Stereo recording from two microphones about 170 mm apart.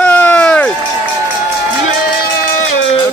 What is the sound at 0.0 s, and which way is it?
Run, 10° left (ahead or behind).